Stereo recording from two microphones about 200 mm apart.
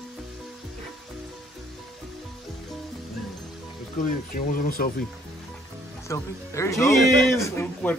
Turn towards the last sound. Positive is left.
turn(degrees=10)  # may be behind; listen again after turning